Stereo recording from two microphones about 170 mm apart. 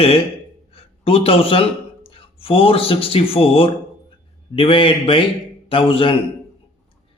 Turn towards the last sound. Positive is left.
turn(degrees=30)  # may be behind; listen again after turning